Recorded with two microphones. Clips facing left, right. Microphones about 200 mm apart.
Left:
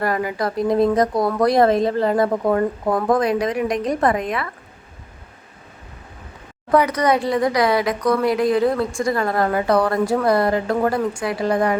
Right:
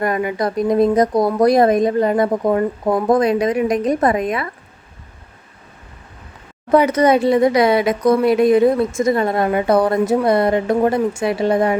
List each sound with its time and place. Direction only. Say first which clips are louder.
0.0 s speech: right 3 dB; 20° right (ahead or behind)
6.7 s speech: right 4 dB; 25° right (ahead or behind)